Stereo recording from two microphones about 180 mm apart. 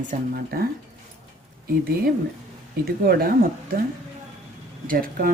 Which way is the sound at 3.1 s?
55° right (ahead or behind).